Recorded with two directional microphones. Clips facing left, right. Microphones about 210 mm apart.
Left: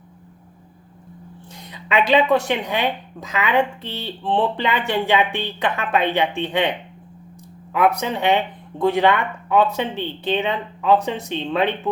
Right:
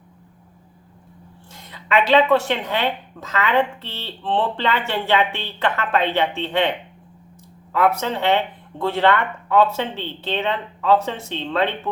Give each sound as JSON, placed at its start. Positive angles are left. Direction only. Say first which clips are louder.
{"t": 1.5, "sound": "a woman's voice", "louder": "right 1 dB", "side_deg": 15}